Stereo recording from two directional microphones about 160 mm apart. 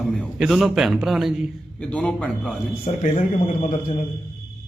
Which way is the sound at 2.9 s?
40° left (ahead or behind).